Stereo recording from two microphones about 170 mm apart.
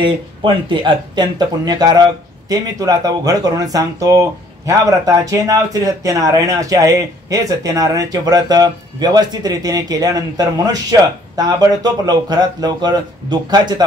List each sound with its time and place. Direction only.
0.0 s speech: 30° right (ahead or behind)